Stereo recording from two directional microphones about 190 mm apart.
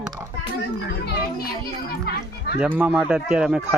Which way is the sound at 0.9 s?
55° left (ahead or behind).